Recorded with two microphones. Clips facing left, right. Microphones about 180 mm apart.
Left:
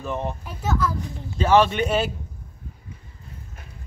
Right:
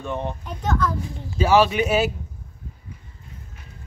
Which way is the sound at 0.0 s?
Centre (ahead or behind).